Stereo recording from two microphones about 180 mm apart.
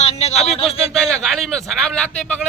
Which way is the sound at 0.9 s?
Centre (ahead or behind).